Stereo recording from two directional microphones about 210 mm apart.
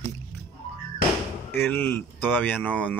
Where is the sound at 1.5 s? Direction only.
10° left (ahead or behind).